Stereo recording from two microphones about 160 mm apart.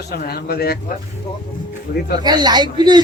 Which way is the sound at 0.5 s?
75° left (ahead or behind).